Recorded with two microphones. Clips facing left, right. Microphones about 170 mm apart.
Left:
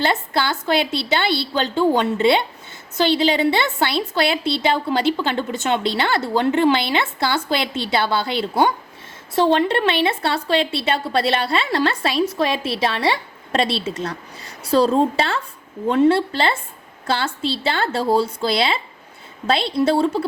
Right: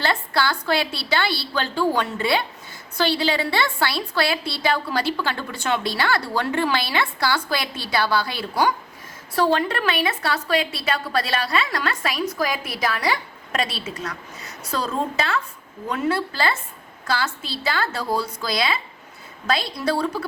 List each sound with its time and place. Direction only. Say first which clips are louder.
0.0 s speech: left 2 dB; 20° left (ahead or behind)